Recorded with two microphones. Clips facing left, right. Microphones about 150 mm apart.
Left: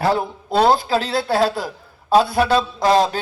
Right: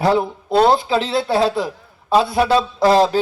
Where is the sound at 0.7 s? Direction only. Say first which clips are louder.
Right 1 dB; 25° right (ahead or behind).